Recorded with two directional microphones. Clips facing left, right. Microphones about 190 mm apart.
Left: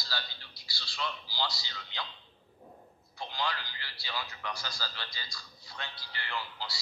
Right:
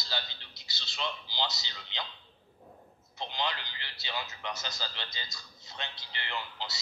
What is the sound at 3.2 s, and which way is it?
A man's voice, 20° right (ahead or behind).